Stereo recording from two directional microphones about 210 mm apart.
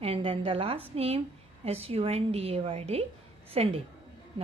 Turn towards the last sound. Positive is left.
turn(degrees=-30)  # may be behind; listen again after turning